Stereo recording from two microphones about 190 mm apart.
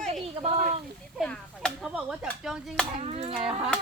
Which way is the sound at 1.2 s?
5° left (ahead or behind).